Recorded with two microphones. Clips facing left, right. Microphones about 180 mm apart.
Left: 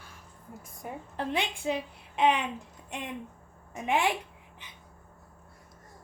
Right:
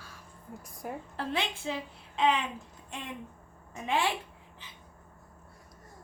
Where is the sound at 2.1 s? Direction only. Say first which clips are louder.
Left 2 dB; 20° left (ahead or behind).